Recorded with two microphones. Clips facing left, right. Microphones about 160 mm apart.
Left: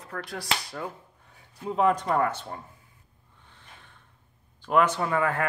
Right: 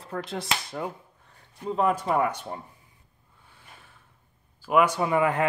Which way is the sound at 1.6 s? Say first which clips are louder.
Left 1 dB; centre (ahead or behind).